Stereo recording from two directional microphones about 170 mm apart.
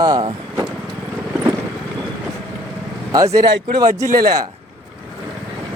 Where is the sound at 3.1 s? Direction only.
20° right (ahead or behind).